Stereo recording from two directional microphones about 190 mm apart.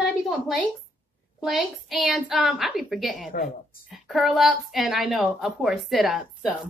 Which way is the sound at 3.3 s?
45° left (ahead or behind).